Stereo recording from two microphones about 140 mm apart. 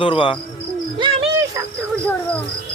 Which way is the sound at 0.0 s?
40° left (ahead or behind).